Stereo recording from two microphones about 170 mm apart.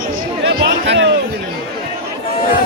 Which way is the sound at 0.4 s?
90° right.